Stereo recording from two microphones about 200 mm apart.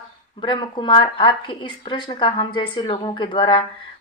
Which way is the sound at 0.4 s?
25° left (ahead or behind).